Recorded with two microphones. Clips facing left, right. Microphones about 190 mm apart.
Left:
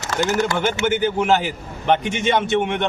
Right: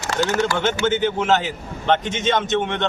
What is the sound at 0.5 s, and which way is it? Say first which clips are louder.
A man's voice: even; 10° left (ahead or behind).